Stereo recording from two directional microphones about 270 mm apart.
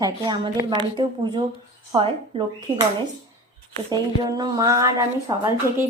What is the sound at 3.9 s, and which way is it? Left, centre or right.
Speech, centre.